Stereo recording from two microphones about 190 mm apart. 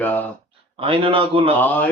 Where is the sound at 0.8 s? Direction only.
30° right (ahead or behind).